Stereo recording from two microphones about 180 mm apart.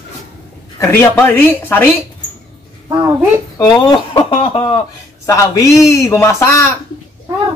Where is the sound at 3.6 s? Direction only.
25° left (ahead or behind).